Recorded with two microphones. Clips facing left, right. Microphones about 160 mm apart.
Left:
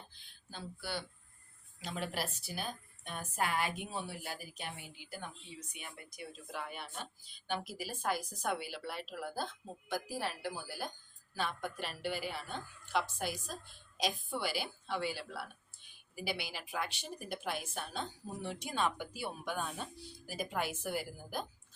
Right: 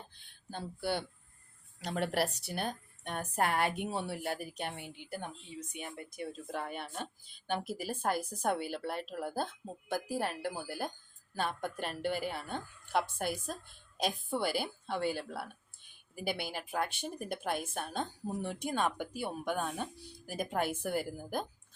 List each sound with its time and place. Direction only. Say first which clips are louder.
0.5 s a woman's voice: right 7 dB; 55° right (ahead or behind)
1.8 s a woman's voice: right 7 dB; 70° right (ahead or behind); by 21.4 s 50° right (ahead or behind)